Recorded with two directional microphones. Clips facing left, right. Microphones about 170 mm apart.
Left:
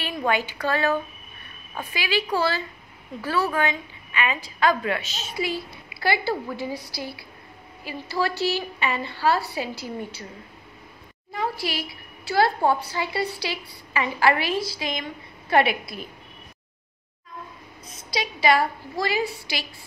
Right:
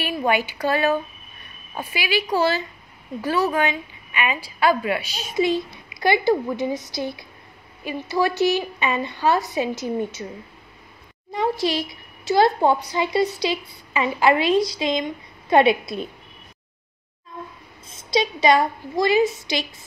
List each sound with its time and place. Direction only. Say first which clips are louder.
0.0 s a woman's voice: right 3 dB; 15° right (ahead or behind)
11.3 s a woman's voice: right 6 dB; 20° right (ahead or behind)
17.8 s a woman's voice: right 8 dB; 25° right (ahead or behind)